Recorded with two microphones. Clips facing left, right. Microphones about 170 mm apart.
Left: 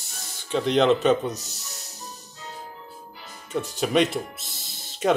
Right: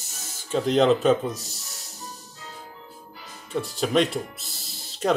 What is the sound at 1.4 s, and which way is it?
Music, 70° left (ahead or behind).